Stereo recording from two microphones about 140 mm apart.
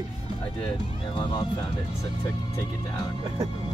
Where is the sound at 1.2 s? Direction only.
35° left (ahead or behind).